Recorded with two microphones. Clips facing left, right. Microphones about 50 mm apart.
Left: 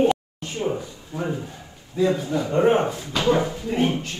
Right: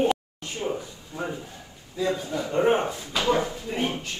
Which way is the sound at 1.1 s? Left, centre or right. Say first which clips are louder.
Left 4 dB; left.